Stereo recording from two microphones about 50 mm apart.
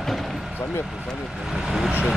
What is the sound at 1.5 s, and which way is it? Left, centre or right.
Speech, centre.